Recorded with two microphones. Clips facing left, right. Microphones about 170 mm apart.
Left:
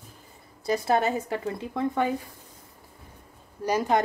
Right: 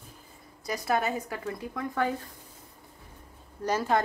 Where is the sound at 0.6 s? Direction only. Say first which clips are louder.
Left 5 dB; 30° left (ahead or behind).